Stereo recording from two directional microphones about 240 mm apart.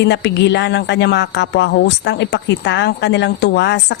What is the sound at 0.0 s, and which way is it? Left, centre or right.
A woman's voice, left.